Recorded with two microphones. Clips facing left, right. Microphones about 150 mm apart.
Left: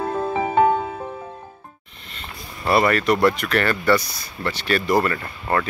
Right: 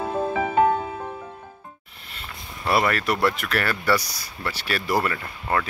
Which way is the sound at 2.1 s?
Centre (ahead or behind).